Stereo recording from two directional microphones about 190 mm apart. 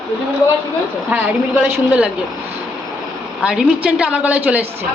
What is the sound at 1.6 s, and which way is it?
Speech, 5° right (ahead or behind).